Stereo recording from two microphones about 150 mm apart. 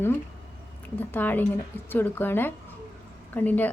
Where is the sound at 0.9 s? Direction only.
10° left (ahead or behind).